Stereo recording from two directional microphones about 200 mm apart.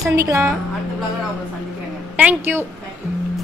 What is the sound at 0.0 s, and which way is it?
Speech, 15° right (ahead or behind).